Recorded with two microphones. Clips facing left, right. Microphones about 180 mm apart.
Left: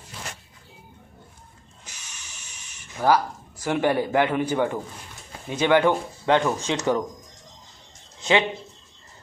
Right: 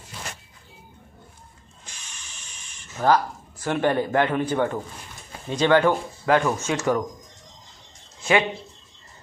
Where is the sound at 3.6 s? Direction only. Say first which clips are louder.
Even; 10° left (ahead or behind).